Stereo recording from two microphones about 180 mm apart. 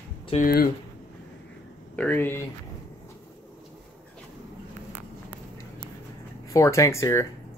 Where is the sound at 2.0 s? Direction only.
10° left (ahead or behind).